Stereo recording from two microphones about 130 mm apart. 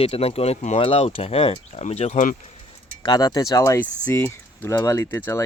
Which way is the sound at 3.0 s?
30° left (ahead or behind).